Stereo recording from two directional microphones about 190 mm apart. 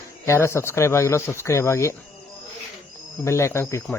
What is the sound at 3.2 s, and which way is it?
Speech, 15° left (ahead or behind).